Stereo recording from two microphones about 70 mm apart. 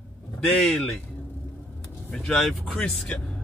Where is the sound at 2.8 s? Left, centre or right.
Centre.